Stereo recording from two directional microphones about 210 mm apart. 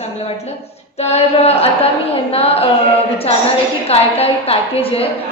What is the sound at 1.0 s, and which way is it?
A woman's voice, 30° left (ahead or behind).